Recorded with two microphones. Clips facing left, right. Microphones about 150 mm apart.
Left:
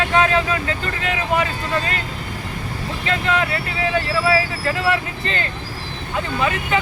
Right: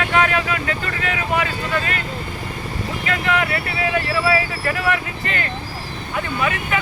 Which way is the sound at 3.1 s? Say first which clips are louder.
Left 1 dB; 25° left (ahead or behind).